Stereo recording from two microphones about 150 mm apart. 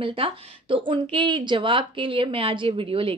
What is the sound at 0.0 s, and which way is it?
Speech, 35° right (ahead or behind).